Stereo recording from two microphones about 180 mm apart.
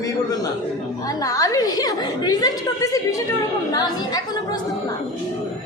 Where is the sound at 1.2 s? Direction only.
20° left (ahead or behind).